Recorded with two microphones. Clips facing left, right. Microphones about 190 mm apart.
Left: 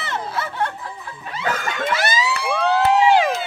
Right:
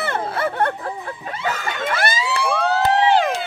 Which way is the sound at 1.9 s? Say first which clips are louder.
Even; 55° right (ahead or behind).